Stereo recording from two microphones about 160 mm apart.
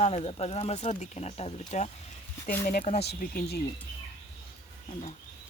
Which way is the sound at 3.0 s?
90° left.